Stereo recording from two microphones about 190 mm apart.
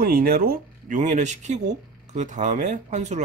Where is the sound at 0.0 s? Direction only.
50° right (ahead or behind).